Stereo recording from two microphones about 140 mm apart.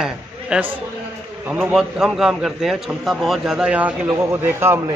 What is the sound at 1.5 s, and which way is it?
A man's voice, 10° right (ahead or behind).